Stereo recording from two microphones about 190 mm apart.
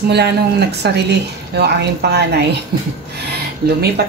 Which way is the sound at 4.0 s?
55° right (ahead or behind).